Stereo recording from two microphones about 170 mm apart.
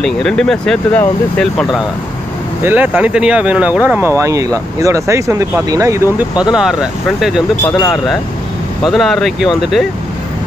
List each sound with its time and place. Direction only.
0.0 s speech: 5° left (ahead or behind)
2.6 s speech: 10° right (ahead or behind)
6.5 s speech: 5° right (ahead or behind)
8.8 s speech: centre (ahead or behind)